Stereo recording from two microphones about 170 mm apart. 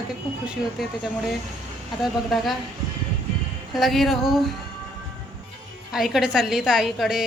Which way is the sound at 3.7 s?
Centre (ahead or behind).